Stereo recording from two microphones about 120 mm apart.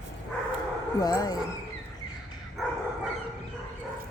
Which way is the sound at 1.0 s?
30° left (ahead or behind).